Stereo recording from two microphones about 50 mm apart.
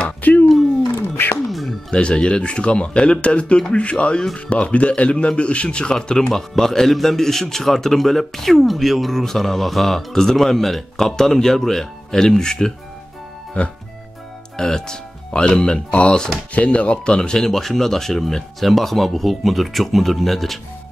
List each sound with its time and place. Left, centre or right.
0.2 s a sound: left
0.9 s a sound: left
1.5 s music: centre
1.9 s a man's voice: centre
13.5 s speech: left
14.6 s a man's voice: centre